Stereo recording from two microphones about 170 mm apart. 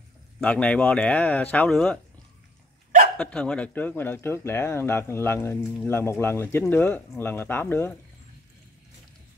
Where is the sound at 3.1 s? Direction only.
5° left (ahead or behind).